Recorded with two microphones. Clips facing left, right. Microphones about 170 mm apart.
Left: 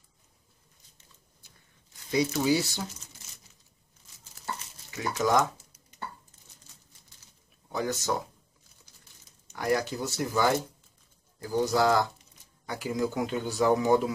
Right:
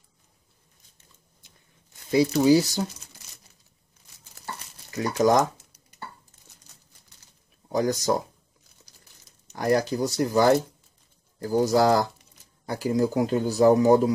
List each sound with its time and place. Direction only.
2.0 s speech: 30° right (ahead or behind)
4.9 s speech: 40° right (ahead or behind)
7.7 s speech: 40° right (ahead or behind)
9.5 s speech: 40° right (ahead or behind)